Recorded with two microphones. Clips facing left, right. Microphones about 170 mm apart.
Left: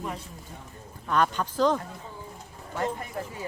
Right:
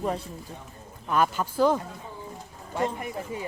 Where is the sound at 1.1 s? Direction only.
5° right (ahead or behind).